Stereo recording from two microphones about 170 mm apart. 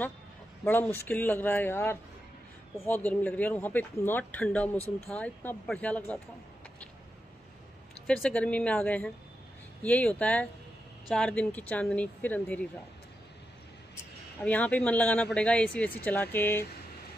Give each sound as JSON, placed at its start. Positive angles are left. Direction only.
{"t": 0.7, "sound": "speech", "side_deg": 10}
{"t": 8.1, "sound": "speech", "side_deg": 5}
{"t": 14.4, "sound": "speech", "side_deg": 10}